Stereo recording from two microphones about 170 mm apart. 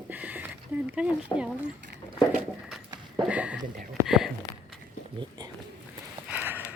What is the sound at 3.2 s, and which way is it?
Speech, 5° right (ahead or behind).